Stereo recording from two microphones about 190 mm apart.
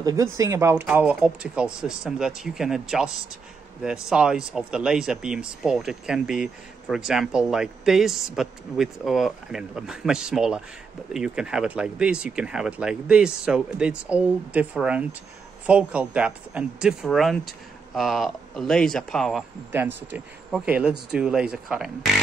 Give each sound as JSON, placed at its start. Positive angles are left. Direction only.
{"t": 0.0, "sound": "speech", "side_deg": -15}